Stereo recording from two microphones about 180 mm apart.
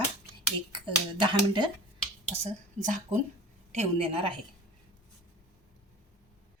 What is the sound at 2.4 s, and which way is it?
A woman's voice, 45° right (ahead or behind).